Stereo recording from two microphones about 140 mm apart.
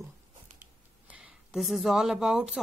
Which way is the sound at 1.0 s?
5° right (ahead or behind).